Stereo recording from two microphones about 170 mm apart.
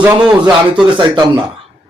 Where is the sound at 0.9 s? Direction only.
30° right (ahead or behind).